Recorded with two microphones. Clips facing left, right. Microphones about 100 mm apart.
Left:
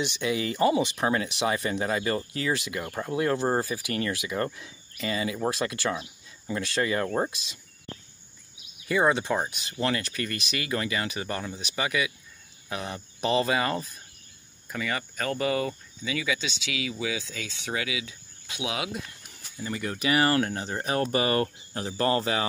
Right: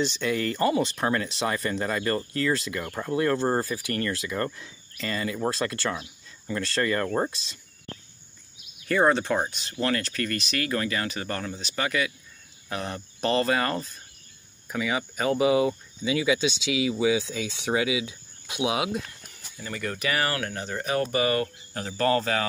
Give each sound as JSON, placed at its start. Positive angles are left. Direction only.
{"t": 0.2, "sound": "speech", "side_deg": 10}
{"t": 8.8, "sound": "speech", "side_deg": 5}
{"t": 14.7, "sound": "speech", "side_deg": -10}
{"t": 19.6, "sound": "speech", "side_deg": 20}